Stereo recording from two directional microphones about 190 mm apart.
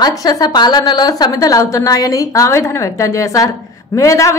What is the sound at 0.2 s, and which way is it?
A woman's voice, 20° left (ahead or behind).